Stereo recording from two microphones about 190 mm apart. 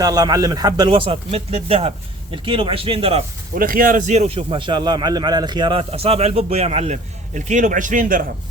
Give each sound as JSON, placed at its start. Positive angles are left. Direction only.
{"t": 0.0, "sound": "speech", "side_deg": -20}
{"t": 3.5, "sound": "a man's voice", "side_deg": -50}